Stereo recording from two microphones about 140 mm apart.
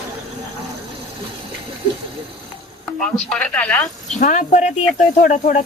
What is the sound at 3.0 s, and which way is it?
Speech, 5° left (ahead or behind).